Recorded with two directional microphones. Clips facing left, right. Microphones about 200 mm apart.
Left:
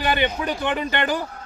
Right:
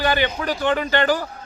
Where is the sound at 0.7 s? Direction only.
20° left (ahead or behind).